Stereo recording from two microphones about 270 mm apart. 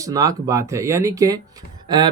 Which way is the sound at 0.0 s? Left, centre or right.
Centre.